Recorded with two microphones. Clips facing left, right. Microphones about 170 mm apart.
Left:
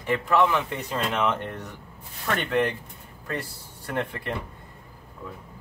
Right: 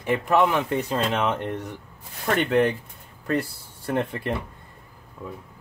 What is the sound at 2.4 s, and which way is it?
Speech, 15° right (ahead or behind).